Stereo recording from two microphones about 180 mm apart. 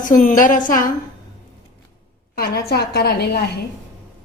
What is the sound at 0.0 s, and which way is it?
Speech, 45° left (ahead or behind).